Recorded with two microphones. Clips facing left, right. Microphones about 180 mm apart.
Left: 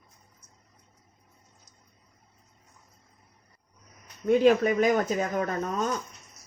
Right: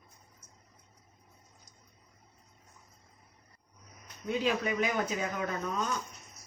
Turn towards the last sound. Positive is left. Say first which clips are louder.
# left 5 dB
turn(degrees=45)  # may be behind; listen again after turning